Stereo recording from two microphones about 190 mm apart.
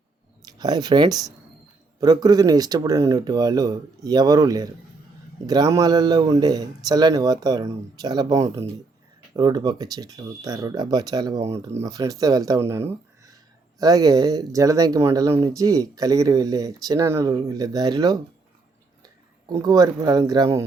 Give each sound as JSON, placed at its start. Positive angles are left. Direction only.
{"t": 0.4, "sound": "speech", "side_deg": -20}